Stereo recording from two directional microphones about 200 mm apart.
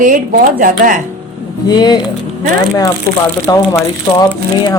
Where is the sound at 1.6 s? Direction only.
20° left (ahead or behind).